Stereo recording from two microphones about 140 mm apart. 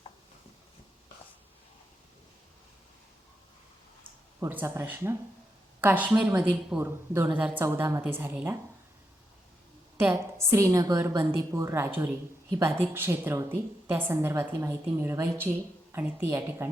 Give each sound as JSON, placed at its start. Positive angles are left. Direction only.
{"t": 4.4, "sound": "a woman's voice", "side_deg": -15}
{"t": 10.1, "sound": "a woman's voice", "side_deg": -20}